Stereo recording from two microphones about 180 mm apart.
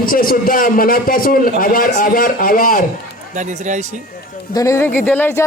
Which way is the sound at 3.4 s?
40° right (ahead or behind).